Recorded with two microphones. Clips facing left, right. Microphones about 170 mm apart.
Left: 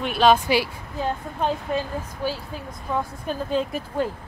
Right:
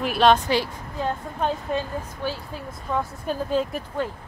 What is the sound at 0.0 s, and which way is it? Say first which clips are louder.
Speech: even; centre (ahead or behind).